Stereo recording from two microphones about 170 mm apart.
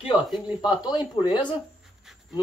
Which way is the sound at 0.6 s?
25° left (ahead or behind).